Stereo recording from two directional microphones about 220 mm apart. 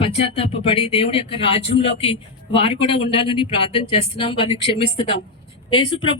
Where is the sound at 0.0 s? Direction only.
25° left (ahead or behind).